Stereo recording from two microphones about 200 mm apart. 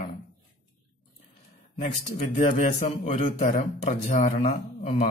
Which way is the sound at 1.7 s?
40° left (ahead or behind).